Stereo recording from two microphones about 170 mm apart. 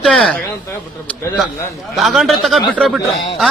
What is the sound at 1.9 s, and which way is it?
Speech, centre (ahead or behind).